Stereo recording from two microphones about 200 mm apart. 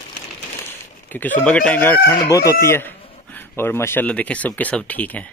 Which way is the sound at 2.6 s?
10° left (ahead or behind).